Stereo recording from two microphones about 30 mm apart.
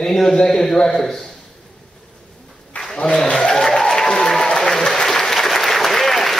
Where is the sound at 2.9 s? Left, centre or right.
Left.